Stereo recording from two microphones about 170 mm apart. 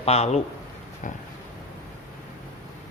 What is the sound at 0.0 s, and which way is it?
Speech, 40° left (ahead or behind).